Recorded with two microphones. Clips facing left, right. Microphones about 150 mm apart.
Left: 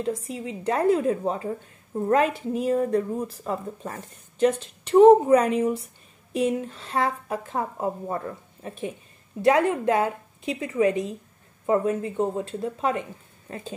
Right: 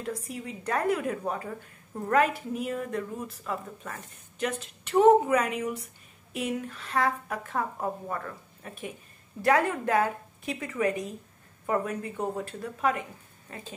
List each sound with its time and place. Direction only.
0.0 s a woman's voice: 25° left (ahead or behind)